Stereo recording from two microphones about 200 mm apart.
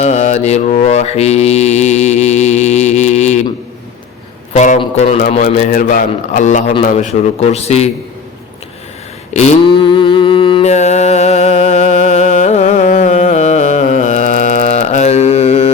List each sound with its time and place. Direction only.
0.0 s mantra: 35° left (ahead or behind)
4.5 s mantra: 35° left (ahead or behind)
9.3 s a sound: 35° left (ahead or behind)